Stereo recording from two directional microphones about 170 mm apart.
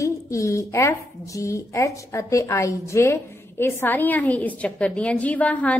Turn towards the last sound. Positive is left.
turn(degrees=10)  # may be behind; listen again after turning